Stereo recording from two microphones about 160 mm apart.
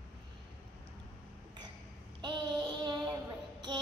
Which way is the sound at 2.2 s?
30° right (ahead or behind).